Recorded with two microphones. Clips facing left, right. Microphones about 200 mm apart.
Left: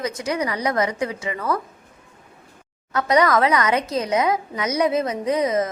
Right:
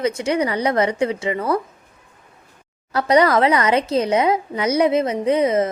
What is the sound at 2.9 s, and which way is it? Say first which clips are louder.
Speech: right 3 dB; 30° right (ahead or behind).